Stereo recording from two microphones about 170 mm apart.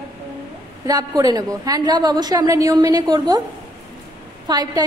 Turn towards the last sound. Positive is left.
turn(degrees=-25)  # may be behind; listen again after turning